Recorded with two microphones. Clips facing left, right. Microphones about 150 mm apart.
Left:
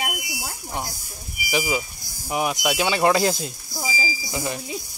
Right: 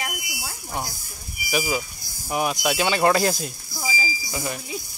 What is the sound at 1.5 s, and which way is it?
Speech, 15° left (ahead or behind).